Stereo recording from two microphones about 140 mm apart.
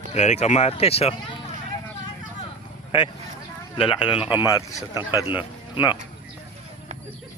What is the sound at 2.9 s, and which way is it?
Speech, 30° left (ahead or behind).